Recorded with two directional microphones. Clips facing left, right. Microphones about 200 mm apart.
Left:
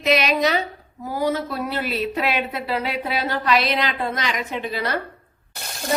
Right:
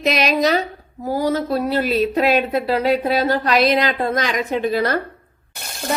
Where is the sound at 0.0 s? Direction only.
40° right (ahead or behind).